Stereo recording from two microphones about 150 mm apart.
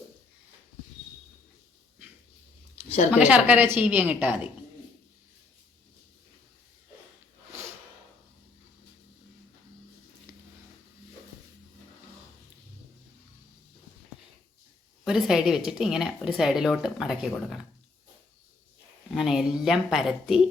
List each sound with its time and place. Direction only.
2.7 s a sound: 45° left (ahead or behind)
3.1 s a woman's voice: 10° right (ahead or behind)
15.0 s speech: 5° right (ahead or behind)
19.1 s speech: 5° right (ahead or behind)